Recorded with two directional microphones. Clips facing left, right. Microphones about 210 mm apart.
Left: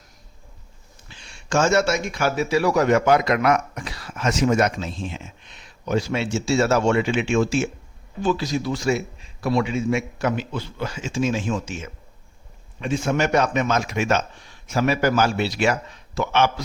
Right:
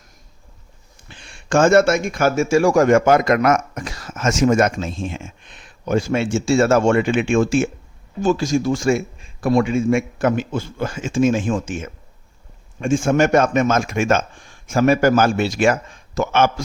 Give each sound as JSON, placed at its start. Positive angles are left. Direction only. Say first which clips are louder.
{"t": 1.0, "sound": "speech", "louder": "right 4 dB", "side_deg": -55}